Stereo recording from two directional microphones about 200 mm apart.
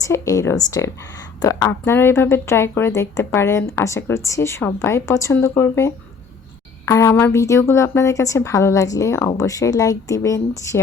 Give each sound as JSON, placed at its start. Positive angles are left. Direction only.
{"t": 0.0, "sound": "speech", "side_deg": 15}